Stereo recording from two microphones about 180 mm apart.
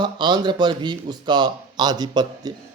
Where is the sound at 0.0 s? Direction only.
25° right (ahead or behind).